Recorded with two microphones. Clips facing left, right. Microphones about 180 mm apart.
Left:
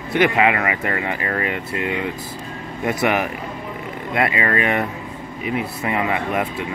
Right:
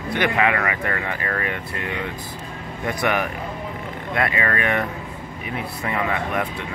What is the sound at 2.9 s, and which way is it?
Speech, 20° left (ahead or behind).